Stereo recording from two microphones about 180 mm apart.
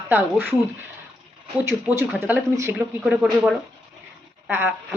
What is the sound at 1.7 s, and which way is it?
Speech, 15° right (ahead or behind).